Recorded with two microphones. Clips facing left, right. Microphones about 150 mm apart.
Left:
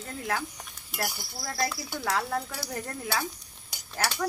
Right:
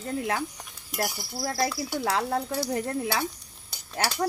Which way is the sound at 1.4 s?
35° right (ahead or behind).